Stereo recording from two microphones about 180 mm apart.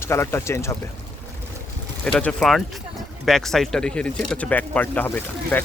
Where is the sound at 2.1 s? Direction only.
5° left (ahead or behind).